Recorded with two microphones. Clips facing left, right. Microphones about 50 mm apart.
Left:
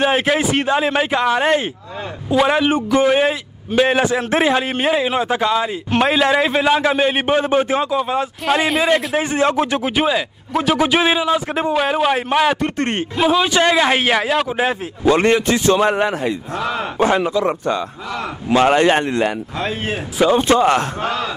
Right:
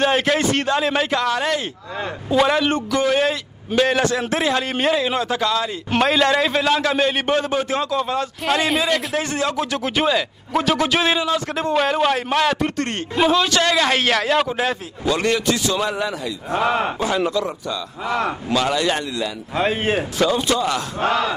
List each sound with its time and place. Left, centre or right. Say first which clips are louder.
0.0 s a man's voice: left 2 dB; centre
2.2 s a man's voice: left 2 dB; centre
8.8 s a man's voice: left 4 dB; centre
9.8 s a man's voice: left 2 dB; centre
12.7 s a man's voice: left 4 dB; left
13.1 s a man's voice: even; centre
13.4 s a man's voice: left 3 dB; centre
15.0 s a man's voice: left 5 dB; left
16.5 s a man's voice: right 3 dB; right
18.5 s a man's voice: left 8 dB; left
19.5 s speech: right 3 dB; centre
20.2 s a man's voice: left 9 dB; left